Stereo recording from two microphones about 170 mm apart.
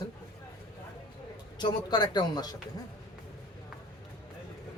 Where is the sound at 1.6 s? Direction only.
25° left (ahead or behind).